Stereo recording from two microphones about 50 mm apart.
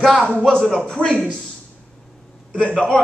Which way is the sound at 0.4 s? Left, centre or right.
Centre.